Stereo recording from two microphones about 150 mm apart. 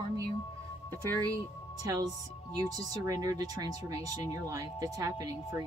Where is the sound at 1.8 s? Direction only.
25° right (ahead or behind).